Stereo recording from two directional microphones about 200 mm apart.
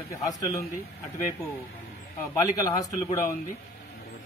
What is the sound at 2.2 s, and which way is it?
Speech, 15° left (ahead or behind).